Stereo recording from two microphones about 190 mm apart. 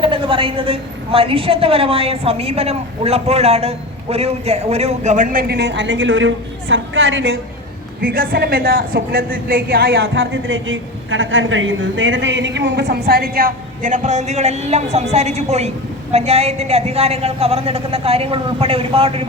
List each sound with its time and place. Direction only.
0.0 s a woman's voice: 25° right (ahead or behind); by 7.3 s 75° right (ahead or behind)
8.0 s a woman's voice: 50° right (ahead or behind); by 19.3 s 30° right (ahead or behind)